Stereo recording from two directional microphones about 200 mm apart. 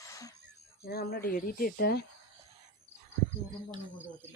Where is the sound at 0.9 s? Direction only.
50° left (ahead or behind).